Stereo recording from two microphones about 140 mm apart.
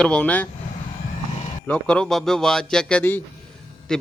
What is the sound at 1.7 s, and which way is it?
Speech, 5° left (ahead or behind).